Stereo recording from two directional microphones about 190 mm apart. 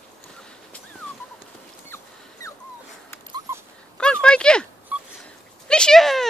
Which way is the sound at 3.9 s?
5° left (ahead or behind).